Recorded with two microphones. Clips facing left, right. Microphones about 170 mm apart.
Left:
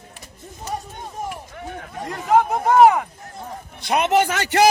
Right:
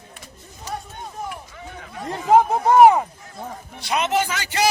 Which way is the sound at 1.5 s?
60° left (ahead or behind).